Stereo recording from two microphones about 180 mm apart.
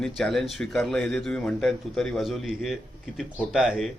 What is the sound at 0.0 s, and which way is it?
A man's voice, centre (ahead or behind).